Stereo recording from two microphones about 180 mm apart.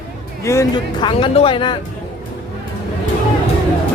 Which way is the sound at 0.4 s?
15° left (ahead or behind).